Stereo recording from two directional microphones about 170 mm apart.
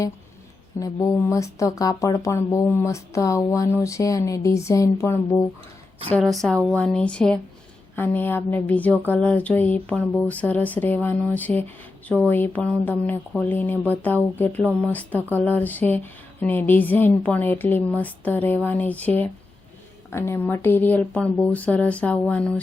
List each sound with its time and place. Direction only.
0.8 s speech: 15° left (ahead or behind)